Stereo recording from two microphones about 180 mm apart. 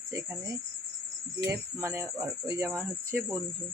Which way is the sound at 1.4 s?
15° right (ahead or behind).